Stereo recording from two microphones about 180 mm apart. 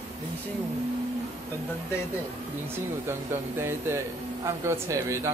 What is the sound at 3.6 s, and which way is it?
Speech, 15° right (ahead or behind).